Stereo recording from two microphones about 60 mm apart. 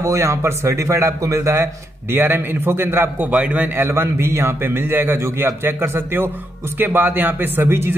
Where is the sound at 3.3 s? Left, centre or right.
Right.